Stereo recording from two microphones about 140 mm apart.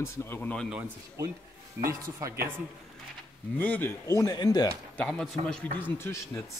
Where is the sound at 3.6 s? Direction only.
15° left (ahead or behind); by 4.7 s 30° left (ahead or behind).